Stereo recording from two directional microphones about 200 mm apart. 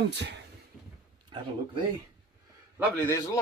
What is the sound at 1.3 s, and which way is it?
Speech, 25° right (ahead or behind).